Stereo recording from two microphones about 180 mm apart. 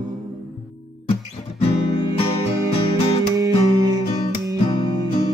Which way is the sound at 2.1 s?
30° left (ahead or behind).